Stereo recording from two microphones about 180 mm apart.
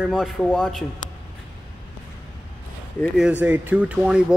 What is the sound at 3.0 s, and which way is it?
Speech, 5° right (ahead or behind).